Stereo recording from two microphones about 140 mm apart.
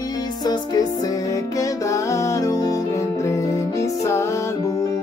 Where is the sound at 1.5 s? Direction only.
25° left (ahead or behind).